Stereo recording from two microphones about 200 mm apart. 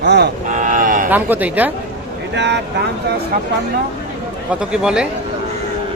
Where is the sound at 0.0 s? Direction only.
60° right (ahead or behind).